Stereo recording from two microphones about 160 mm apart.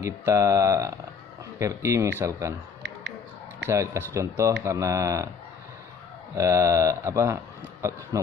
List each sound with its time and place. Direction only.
0.0 s speech: 15° right (ahead or behind)
3.6 s speech: 15° right (ahead or behind)
6.3 s speech: 20° right (ahead or behind)